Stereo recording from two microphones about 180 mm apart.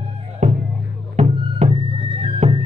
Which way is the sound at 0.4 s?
40° right (ahead or behind).